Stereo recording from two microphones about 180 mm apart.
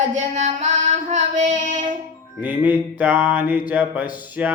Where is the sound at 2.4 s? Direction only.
10° right (ahead or behind).